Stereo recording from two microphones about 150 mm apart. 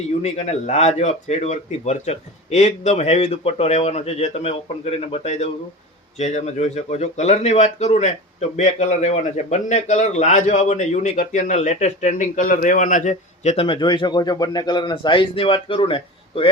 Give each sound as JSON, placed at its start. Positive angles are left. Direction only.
{"t": 0.2, "sound": "a man's voice", "side_deg": 45}